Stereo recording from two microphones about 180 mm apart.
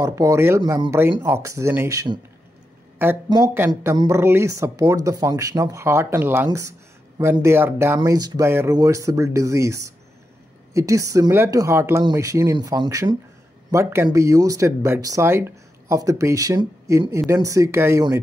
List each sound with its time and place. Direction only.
0.0 s speech: 15° right (ahead or behind)
3.3 s speech: 20° right (ahead or behind)